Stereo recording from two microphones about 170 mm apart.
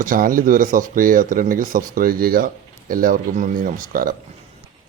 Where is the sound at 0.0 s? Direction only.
55° right (ahead or behind).